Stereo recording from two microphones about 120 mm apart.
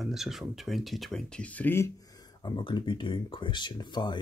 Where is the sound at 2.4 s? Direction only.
35° left (ahead or behind).